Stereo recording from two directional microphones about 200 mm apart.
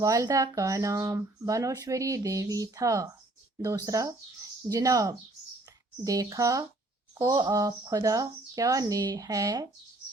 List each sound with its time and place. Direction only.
0.0 s speech: 15° right (ahead or behind)